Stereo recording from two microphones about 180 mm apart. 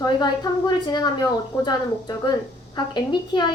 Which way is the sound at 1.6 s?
25° left (ahead or behind).